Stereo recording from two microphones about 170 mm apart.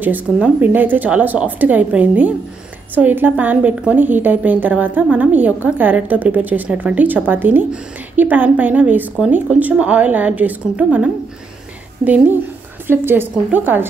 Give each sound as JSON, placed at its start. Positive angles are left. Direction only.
{"t": 0.0, "sound": "a woman's voice", "side_deg": -10}